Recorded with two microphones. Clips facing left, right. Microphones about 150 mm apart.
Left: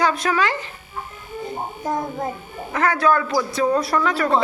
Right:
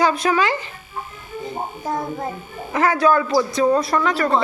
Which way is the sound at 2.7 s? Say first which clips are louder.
Right 2 dB; centre (ahead or behind).